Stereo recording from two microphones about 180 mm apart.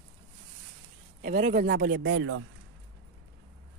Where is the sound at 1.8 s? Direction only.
75° right (ahead or behind).